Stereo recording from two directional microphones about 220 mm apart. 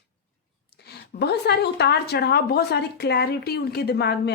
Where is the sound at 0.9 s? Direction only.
50° left (ahead or behind).